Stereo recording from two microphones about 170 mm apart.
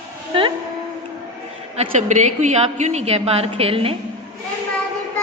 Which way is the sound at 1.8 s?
45° right (ahead or behind).